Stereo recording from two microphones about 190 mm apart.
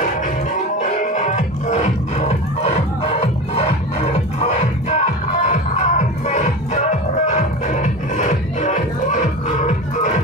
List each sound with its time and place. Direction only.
0.7 s music: 40° left (ahead or behind)